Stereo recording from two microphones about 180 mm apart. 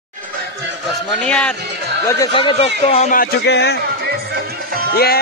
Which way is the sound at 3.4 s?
70° left (ahead or behind).